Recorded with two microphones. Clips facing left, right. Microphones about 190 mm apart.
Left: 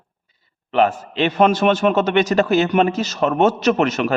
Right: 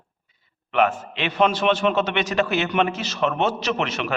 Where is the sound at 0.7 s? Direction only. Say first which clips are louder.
Left 3 dB; 35° left (ahead or behind).